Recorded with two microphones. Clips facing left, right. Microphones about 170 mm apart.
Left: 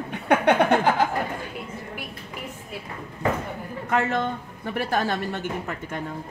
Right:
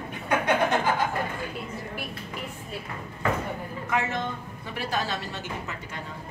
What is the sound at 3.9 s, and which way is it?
Speech, 60° left (ahead or behind).